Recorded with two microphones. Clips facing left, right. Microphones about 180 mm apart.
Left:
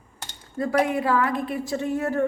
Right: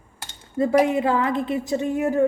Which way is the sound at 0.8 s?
25° right (ahead or behind).